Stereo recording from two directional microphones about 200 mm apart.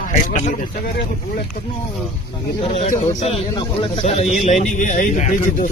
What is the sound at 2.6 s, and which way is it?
A man's voice, 30° left (ahead or behind).